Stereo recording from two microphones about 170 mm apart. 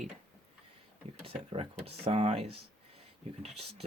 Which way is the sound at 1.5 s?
35° right (ahead or behind).